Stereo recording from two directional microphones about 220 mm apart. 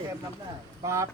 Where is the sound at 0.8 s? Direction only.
15° right (ahead or behind).